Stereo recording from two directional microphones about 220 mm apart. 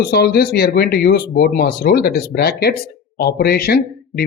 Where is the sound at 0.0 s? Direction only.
45° left (ahead or behind).